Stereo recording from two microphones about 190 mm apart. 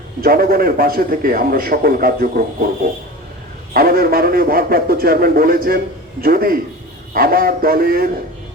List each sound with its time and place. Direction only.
0.2 s a man's voice: 50° right (ahead or behind)
3.8 s a man's voice: 50° right (ahead or behind)